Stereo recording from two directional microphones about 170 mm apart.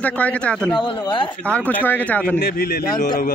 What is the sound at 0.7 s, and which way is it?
Speech, 30° left (ahead or behind).